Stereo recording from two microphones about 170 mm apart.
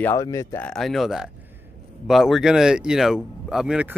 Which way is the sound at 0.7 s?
Centre (ahead or behind).